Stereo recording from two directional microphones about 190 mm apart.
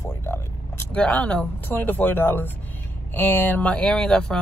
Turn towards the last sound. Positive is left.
turn(degrees=5)  # may be behind; listen again after turning